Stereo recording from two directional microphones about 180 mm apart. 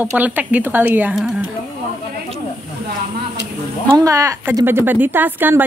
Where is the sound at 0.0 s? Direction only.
10° right (ahead or behind).